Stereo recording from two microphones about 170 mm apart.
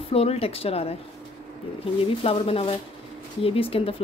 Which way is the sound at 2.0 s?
35° left (ahead or behind).